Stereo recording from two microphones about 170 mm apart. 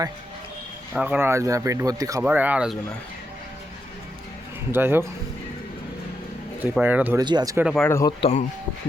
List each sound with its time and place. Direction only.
0.9 s speech: 10° right (ahead or behind)
2.2 s speech: 10° right (ahead or behind)
4.7 s speech: 15° right (ahead or behind)
6.6 s speech: 10° right (ahead or behind)
7.2 s speech: 25° right (ahead or behind)
7.5 s speech: 5° right (ahead or behind)
7.8 s speech: 15° left (ahead or behind)
8.2 s speech: 40° left (ahead or behind)